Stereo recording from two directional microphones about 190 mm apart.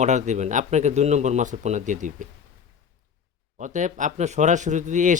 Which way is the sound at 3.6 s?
40° right (ahead or behind).